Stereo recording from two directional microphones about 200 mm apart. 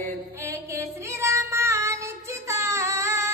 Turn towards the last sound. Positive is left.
turn(degrees=-15)  # may be behind; listen again after turning